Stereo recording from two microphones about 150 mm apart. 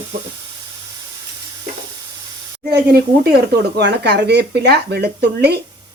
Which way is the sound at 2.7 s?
90° right.